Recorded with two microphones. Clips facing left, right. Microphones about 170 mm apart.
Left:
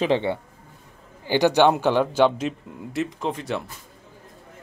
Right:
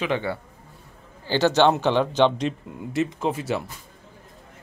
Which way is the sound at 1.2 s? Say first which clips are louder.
Left 1 dB; 15° left (ahead or behind).